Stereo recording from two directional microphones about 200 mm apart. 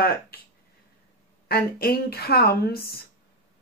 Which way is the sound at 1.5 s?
50° left (ahead or behind).